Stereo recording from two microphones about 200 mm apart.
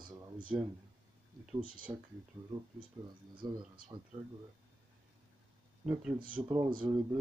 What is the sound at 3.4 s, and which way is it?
Speech, 20° right (ahead or behind).